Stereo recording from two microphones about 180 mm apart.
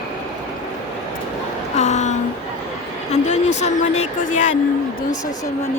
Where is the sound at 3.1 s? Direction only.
40° left (ahead or behind).